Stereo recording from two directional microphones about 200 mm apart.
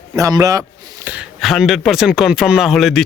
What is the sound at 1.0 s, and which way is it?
Speech, 5° right (ahead or behind).